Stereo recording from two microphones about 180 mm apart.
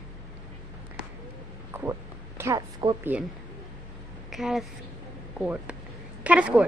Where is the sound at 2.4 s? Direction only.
20° right (ahead or behind).